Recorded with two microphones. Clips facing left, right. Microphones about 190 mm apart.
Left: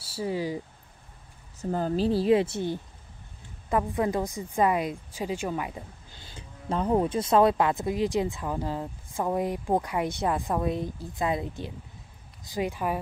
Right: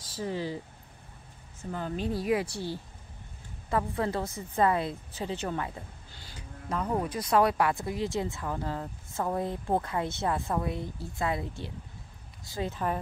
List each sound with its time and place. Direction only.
0.0 s speech: 10° left (ahead or behind)
1.6 s a woman's voice: 40° left (ahead or behind); by 13.0 s 10° left (ahead or behind)